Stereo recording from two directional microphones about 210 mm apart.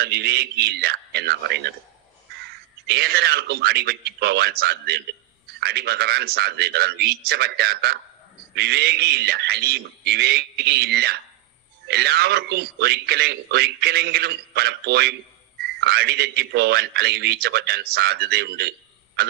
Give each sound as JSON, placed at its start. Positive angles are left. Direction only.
{"t": 0.0, "sound": "speech", "side_deg": -50}
{"t": 2.8, "sound": "speech", "side_deg": -50}